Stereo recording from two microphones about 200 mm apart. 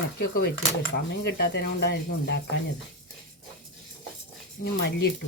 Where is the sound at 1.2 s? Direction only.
55° left (ahead or behind).